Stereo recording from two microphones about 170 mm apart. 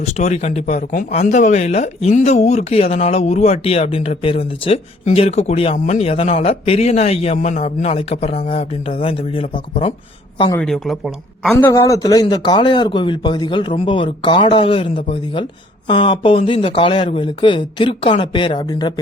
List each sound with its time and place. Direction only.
0.1 s speech: 40° left (ahead or behind)
10.6 s a man's voice: centre (ahead or behind)
11.5 s a man's voice: 15° left (ahead or behind)